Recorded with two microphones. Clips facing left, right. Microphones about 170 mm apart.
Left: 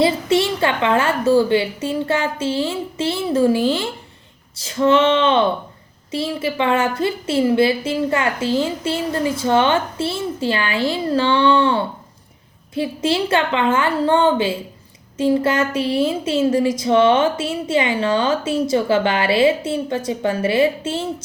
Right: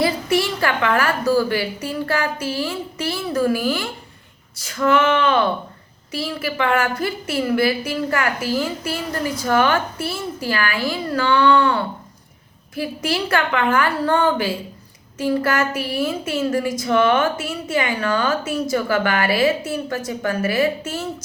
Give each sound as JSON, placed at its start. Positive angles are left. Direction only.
{"t": 0.0, "sound": "a woman's voice", "side_deg": 25}